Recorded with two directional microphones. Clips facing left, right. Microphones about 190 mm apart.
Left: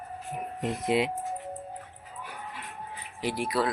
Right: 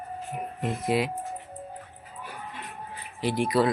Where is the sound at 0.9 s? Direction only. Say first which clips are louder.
Even; 25° left (ahead or behind).